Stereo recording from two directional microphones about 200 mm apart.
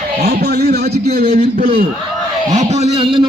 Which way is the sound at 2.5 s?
35° right (ahead or behind).